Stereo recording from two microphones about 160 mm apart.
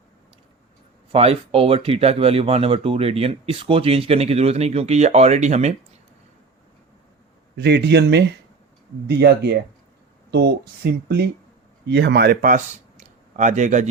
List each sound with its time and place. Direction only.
1.1 s speech: 40° right (ahead or behind)
7.5 s a man's voice: 90° right; by 13.8 s 50° right (ahead or behind)